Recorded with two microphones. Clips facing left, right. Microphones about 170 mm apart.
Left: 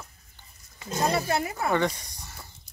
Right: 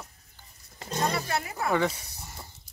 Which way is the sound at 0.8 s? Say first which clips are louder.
Left 2 dB; 5° left (ahead or behind).